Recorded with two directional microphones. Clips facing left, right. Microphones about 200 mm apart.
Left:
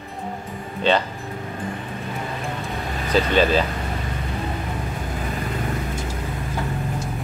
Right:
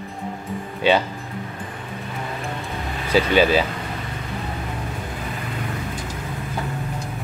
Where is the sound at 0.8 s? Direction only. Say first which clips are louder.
Right 2 dB; 10° right (ahead or behind).